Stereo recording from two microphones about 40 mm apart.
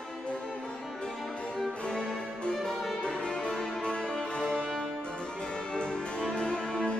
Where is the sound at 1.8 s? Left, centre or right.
Left.